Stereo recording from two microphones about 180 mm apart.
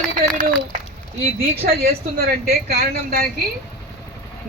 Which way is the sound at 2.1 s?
60° right (ahead or behind).